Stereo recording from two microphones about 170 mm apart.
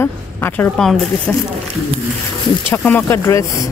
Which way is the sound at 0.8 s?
5° left (ahead or behind).